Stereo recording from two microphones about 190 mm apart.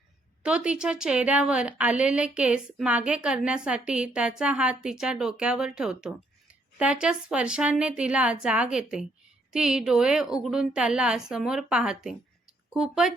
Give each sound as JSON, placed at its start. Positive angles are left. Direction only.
{"t": 0.4, "sound": "a woman's voice", "side_deg": -5}